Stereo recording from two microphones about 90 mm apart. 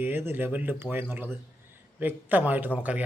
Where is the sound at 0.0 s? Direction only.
25° right (ahead or behind).